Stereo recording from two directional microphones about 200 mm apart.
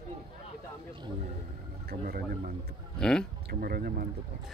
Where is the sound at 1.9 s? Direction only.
50° right (ahead or behind).